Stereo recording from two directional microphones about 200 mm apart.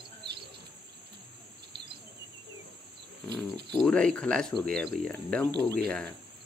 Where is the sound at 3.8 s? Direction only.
5° left (ahead or behind).